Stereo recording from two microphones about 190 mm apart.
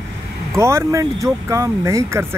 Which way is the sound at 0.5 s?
15° right (ahead or behind).